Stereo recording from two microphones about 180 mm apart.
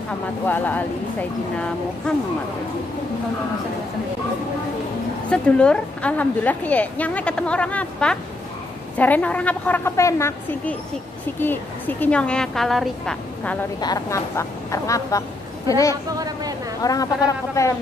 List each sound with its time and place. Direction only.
0.5 s a woman's voice: 10° left (ahead or behind)
5.3 s a woman's voice: 5° left (ahead or behind)
13.7 s a woman's voice: 20° left (ahead or behind)
16.2 s a woman's voice: 20° right (ahead or behind)
16.8 s speech: 20° left (ahead or behind)